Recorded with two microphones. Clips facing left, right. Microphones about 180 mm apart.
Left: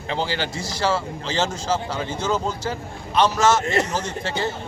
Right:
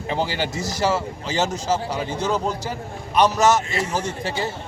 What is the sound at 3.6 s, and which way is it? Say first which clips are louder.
Speech: left 4 dB; 65° left (ahead or behind).